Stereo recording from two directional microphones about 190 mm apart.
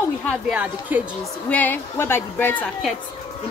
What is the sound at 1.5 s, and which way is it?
Speech, 10° left (ahead or behind).